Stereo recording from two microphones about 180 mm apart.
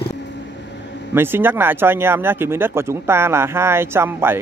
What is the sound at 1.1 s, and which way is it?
Speech, 10° right (ahead or behind).